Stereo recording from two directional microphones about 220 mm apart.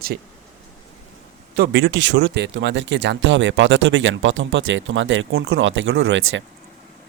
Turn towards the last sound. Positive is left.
turn(degrees=-60)  # may be behind; listen again after turning